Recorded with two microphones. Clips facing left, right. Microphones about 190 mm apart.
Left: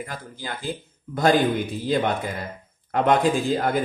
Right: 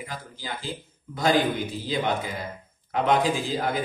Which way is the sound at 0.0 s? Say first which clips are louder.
Left 3 dB; 55° left (ahead or behind).